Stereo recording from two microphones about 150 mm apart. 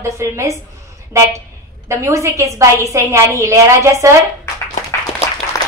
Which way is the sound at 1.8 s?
20° right (ahead or behind).